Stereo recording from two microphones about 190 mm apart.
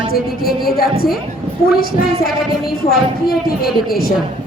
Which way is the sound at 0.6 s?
50° left (ahead or behind).